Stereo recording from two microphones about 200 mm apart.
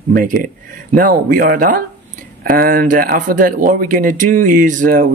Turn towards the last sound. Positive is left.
turn(degrees=-40)  # may be behind; listen again after turning